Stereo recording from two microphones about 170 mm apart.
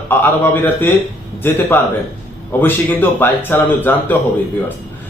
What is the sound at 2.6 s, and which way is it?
A man's voice, 10° left (ahead or behind).